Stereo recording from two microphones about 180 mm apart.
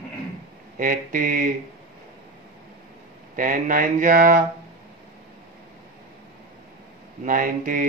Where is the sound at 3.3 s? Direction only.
50° right (ahead or behind).